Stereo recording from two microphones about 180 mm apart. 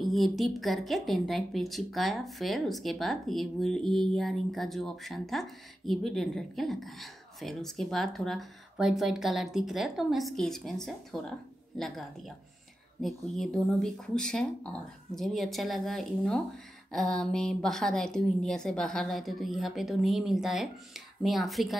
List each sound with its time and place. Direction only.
0.0 s a woman's voice: centre (ahead or behind)
13.0 s a woman's voice: centre (ahead or behind)